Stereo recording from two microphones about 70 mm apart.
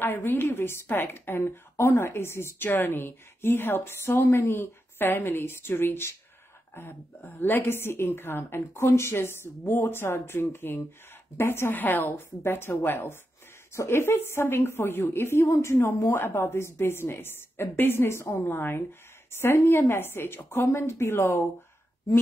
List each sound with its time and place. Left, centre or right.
0.0 s a woman's voice: left
16.1 s a woman's voice: left